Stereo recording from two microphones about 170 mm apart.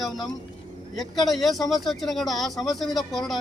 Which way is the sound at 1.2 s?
Centre (ahead or behind).